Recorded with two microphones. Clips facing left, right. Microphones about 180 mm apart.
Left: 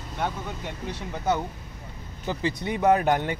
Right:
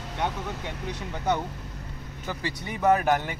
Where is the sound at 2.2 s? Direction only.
20° left (ahead or behind).